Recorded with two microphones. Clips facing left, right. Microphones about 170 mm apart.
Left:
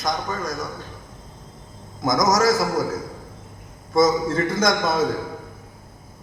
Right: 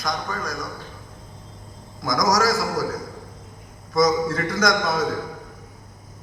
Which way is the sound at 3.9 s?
25° left (ahead or behind).